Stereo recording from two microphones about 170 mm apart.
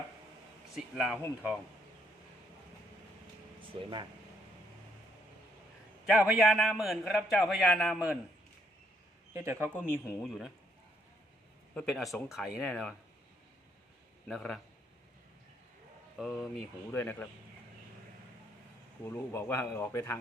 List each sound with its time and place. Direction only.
0.8 s a man's voice: 5° right (ahead or behind)
3.8 s speech: 30° right (ahead or behind)
6.1 s a man's voice: centre (ahead or behind)
9.3 s speech: 15° right (ahead or behind)
9.6 s speech: 10° left (ahead or behind)
10.2 s a man's voice: centre (ahead or behind)
11.7 s a man's voice: 5° left (ahead or behind)
14.3 s a man's voice: 5° left (ahead or behind)
16.1 s a man's voice: centre (ahead or behind)
16.9 s speech: 10° left (ahead or behind)
19.0 s speech: 15° left (ahead or behind)